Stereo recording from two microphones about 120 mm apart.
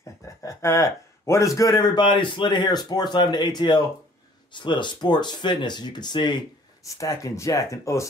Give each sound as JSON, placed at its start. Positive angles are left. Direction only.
{"t": 0.4, "sound": "speech", "side_deg": 25}
{"t": 6.8, "sound": "speech", "side_deg": 25}